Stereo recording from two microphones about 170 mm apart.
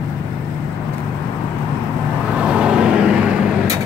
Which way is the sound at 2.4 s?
5° right (ahead or behind).